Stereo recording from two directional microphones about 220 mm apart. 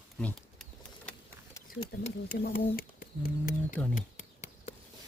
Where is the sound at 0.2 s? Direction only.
5° left (ahead or behind).